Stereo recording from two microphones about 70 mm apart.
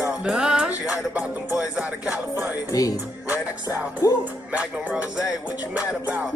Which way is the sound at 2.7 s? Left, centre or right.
Left.